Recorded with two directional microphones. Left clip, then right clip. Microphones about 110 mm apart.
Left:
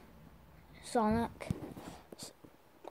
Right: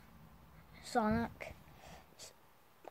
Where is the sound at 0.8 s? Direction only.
30° left (ahead or behind).